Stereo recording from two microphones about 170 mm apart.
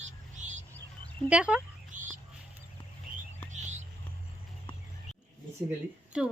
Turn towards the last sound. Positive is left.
turn(degrees=-5)  # may be behind; listen again after turning